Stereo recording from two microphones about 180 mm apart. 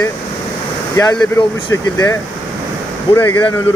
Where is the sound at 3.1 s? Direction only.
10° left (ahead or behind).